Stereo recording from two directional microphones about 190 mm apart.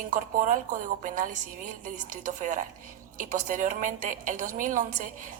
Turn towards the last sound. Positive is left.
turn(degrees=-45)  # may be behind; listen again after turning